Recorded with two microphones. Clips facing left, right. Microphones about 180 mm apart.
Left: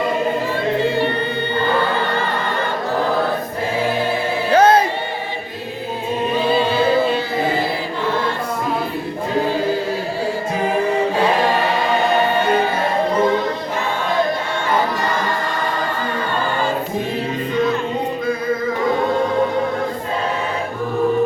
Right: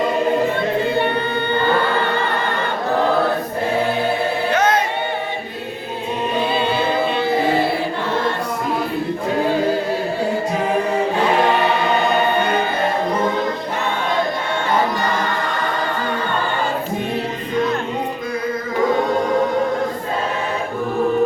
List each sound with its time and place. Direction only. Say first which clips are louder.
4.5 s music: left 7 dB; 30° left (ahead or behind)